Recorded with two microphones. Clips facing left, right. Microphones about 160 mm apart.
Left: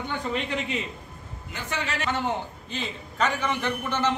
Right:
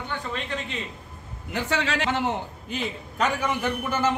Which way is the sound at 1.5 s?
85° right.